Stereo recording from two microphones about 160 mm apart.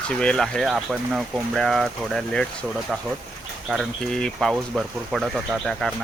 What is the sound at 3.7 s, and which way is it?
Speech, 5° left (ahead or behind).